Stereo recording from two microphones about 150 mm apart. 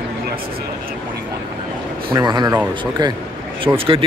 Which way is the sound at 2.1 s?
25° right (ahead or behind).